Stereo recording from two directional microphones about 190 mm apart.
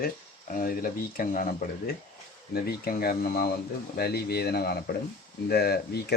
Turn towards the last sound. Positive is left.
turn(degrees=55)  # may be behind; listen again after turning